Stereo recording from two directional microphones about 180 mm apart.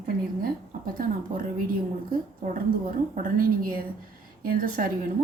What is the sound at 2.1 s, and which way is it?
A woman's voice, 50° right (ahead or behind).